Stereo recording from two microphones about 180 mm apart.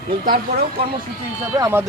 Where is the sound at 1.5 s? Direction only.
20° right (ahead or behind).